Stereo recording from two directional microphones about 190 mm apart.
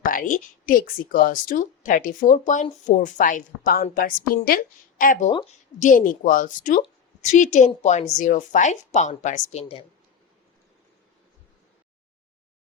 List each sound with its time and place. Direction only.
0.0 s speech: 45° left (ahead or behind)